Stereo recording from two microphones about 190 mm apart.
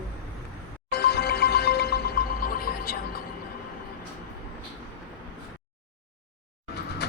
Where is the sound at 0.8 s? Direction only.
60° left (ahead or behind).